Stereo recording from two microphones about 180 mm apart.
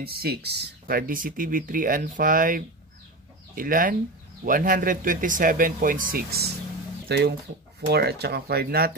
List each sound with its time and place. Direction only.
0.0 s speech: 60° right (ahead or behind)